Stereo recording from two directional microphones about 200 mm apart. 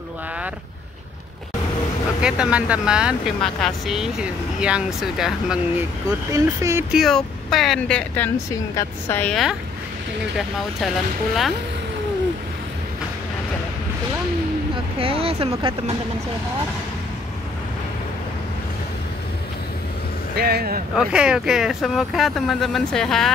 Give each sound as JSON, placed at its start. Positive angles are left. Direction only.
{"t": 2.2, "sound": "speech", "side_deg": -5}
{"t": 6.0, "sound": "a woman's voice", "side_deg": -15}
{"t": 15.0, "sound": "speech", "side_deg": -30}
{"t": 20.3, "sound": "speech", "side_deg": -50}
{"t": 20.9, "sound": "speech", "side_deg": -5}